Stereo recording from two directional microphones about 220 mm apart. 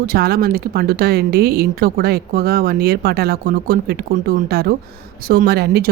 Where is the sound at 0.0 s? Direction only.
45° right (ahead or behind).